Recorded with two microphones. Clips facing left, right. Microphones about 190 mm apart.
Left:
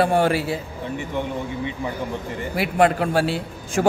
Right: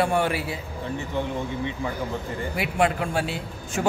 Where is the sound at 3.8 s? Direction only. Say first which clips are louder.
Left 6 dB; 50° left (ahead or behind).